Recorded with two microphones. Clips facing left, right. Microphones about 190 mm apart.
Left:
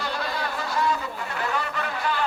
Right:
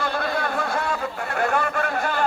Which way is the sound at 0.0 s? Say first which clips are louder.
Right 4 dB; 55° right (ahead or behind).